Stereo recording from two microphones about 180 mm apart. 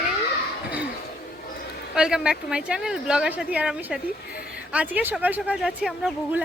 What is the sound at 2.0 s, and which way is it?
Speech, 5° right (ahead or behind).